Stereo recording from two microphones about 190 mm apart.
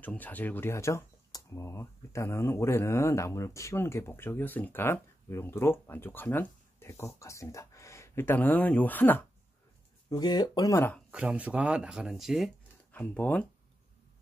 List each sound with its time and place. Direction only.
0.0 s speech: 10° left (ahead or behind)
10.0 s speech: 20° left (ahead or behind)
11.1 s speech: 5° right (ahead or behind)